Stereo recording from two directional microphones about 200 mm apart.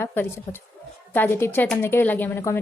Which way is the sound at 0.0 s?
10° left (ahead or behind).